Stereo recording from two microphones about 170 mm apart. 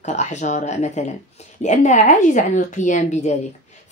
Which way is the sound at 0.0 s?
45° left (ahead or behind).